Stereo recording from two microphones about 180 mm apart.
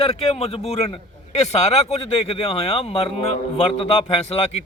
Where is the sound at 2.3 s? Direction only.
35° left (ahead or behind).